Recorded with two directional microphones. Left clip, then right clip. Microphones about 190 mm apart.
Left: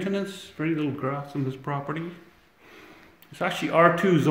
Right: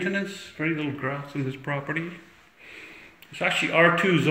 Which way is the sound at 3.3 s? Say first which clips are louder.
Right 3 dB; 30° left (ahead or behind).